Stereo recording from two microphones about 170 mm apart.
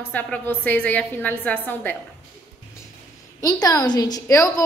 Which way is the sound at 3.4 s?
20° left (ahead or behind).